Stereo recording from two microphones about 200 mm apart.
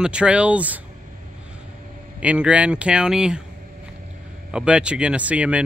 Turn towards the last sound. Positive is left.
turn(degrees=-5)  # may be behind; listen again after turning